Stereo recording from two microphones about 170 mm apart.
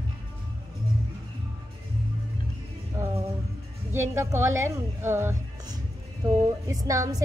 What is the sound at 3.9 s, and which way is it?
A woman's voice, 15° right (ahead or behind).